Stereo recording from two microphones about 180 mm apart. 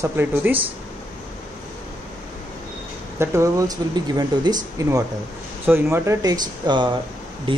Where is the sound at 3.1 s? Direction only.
15° right (ahead or behind).